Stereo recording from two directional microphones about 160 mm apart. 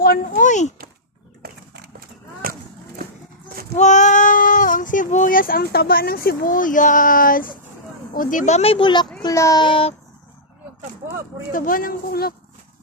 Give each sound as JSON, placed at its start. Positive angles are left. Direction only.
{"t": 0.0, "sound": "speech", "side_deg": 60}
{"t": 1.4, "sound": "horse", "side_deg": -75}
{"t": 3.8, "sound": "a child's voice", "side_deg": 50}
{"t": 11.5, "sound": "speech", "side_deg": 60}